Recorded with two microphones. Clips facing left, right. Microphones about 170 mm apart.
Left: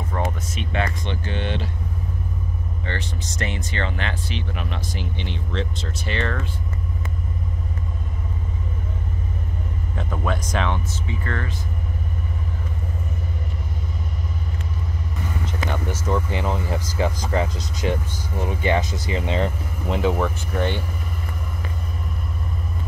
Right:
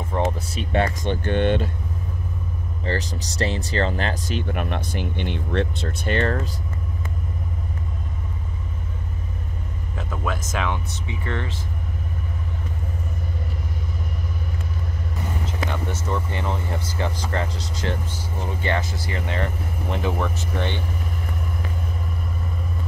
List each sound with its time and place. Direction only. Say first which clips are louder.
0.1 s a sound: right 4 dB; 20° right (ahead or behind)
0.5 s speech: right 3 dB; 35° right (ahead or behind)
1.2 s speech: right 8 dB; 50° right (ahead or behind)
2.8 s speech: right 5 dB; 35° right (ahead or behind)
10.2 s speech: left 2 dB; 5° right (ahead or behind)
11.1 s speech: right 1 dB; 20° right (ahead or behind)
15.7 s speech: left 5 dB; 10° left (ahead or behind)